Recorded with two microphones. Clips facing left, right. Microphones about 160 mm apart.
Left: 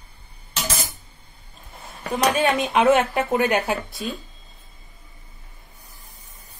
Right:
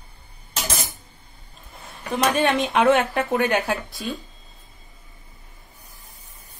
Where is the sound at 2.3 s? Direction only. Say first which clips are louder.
Even; centre (ahead or behind).